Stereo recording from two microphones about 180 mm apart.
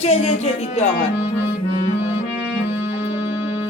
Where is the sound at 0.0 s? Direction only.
35° left (ahead or behind).